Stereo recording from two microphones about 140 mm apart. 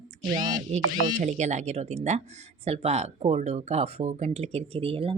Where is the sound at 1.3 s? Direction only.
55° right (ahead or behind).